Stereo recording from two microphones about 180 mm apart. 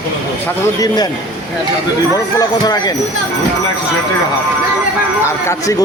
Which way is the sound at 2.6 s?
20° left (ahead or behind).